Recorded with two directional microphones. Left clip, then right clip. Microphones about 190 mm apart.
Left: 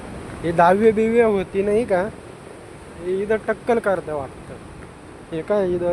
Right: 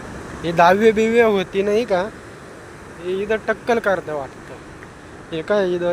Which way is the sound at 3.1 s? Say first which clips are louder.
Right 1 dB; 20° left (ahead or behind).